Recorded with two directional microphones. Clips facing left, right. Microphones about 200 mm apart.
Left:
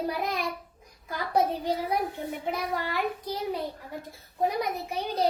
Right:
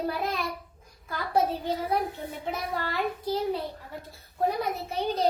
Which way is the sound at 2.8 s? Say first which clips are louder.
Even; 15° left (ahead or behind).